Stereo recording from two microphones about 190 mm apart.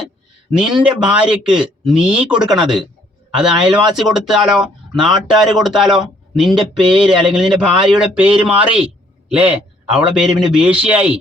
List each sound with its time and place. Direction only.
0.5 s a man's voice: centre (ahead or behind)
6.5 s a sound: 25° right (ahead or behind)
7.9 s a man's voice: 5° right (ahead or behind)